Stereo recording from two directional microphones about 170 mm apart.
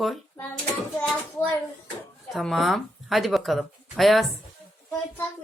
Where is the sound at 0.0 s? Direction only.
Centre (ahead or behind).